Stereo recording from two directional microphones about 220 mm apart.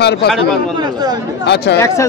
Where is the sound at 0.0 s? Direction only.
50° left (ahead or behind).